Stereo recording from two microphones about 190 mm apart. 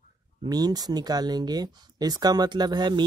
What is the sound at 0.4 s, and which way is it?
Speech, 20° right (ahead or behind).